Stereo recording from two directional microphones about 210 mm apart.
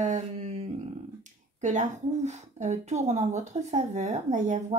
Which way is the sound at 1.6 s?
35° right (ahead or behind).